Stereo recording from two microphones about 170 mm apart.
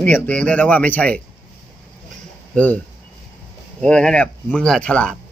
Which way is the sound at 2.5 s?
10° left (ahead or behind).